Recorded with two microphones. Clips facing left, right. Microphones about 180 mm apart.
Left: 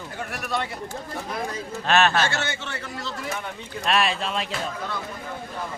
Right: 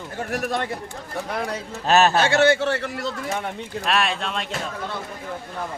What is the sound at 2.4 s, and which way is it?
Speech, 70° right (ahead or behind).